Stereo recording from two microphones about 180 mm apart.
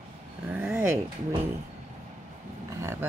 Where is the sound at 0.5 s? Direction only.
10° right (ahead or behind).